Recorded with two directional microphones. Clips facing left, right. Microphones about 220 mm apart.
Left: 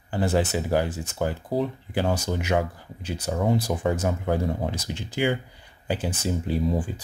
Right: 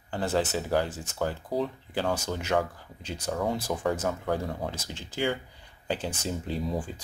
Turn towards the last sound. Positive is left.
turn(degrees=5)  # may be behind; listen again after turning